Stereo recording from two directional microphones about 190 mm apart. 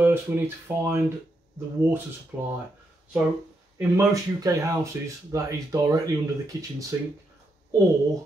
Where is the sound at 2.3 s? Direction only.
10° right (ahead or behind).